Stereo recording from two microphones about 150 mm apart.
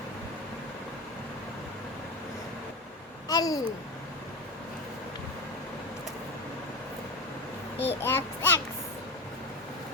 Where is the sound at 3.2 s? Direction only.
25° left (ahead or behind).